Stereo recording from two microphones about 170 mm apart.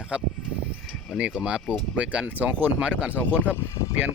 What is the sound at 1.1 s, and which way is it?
Speech, 5° right (ahead or behind).